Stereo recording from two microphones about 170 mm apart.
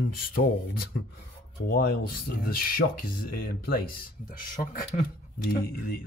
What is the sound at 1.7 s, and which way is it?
Speech, 60° left (ahead or behind).